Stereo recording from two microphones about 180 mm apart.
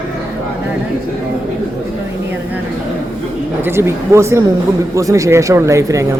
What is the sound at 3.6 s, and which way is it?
Speech, 15° right (ahead or behind).